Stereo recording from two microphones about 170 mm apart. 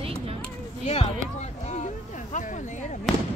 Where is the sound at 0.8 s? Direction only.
35° left (ahead or behind).